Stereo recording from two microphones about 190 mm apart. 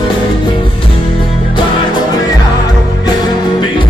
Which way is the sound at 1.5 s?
25° left (ahead or behind).